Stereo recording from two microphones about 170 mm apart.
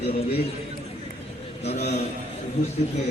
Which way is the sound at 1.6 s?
40° left (ahead or behind).